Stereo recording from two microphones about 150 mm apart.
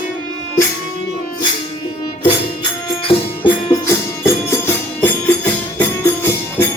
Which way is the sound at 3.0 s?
35° left (ahead or behind).